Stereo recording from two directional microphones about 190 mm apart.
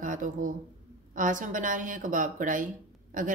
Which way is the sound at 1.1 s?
45° right (ahead or behind).